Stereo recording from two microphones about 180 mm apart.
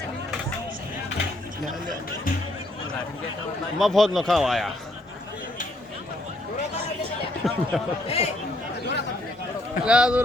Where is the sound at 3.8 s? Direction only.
Centre (ahead or behind).